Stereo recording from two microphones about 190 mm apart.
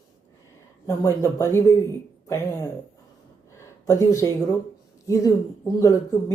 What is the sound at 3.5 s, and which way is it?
Speech, 15° left (ahead or behind).